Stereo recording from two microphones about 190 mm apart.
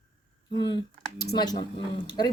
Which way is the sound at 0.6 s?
25° left (ahead or behind).